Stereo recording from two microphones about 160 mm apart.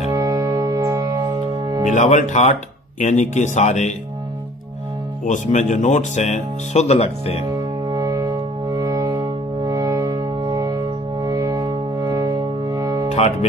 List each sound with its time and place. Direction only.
0.1 s music: 25° right (ahead or behind)
1.9 s speech: 50° left (ahead or behind)
5.2 s speech: 50° left (ahead or behind)
7.9 s music: 20° right (ahead or behind)
13.1 s speech: 45° left (ahead or behind)